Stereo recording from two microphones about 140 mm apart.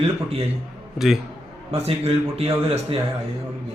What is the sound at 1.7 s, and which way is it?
Speech, 45° right (ahead or behind).